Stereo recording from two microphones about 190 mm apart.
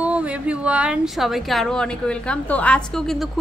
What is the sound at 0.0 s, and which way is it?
A woman's voice, 5° right (ahead or behind).